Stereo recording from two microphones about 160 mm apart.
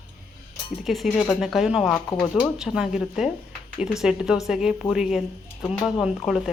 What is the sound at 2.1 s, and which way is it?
Speech, 20° left (ahead or behind).